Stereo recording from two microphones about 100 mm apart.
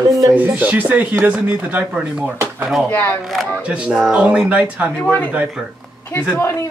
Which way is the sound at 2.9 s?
20° left (ahead or behind).